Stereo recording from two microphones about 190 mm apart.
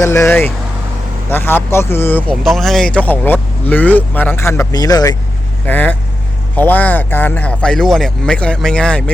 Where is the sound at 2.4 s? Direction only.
Centre (ahead or behind); by 5.1 s 20° left (ahead or behind).